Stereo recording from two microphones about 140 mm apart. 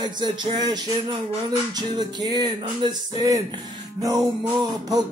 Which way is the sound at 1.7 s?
30° right (ahead or behind).